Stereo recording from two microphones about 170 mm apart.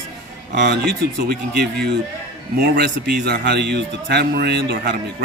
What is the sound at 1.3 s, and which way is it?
A man's voice, 70° right (ahead or behind).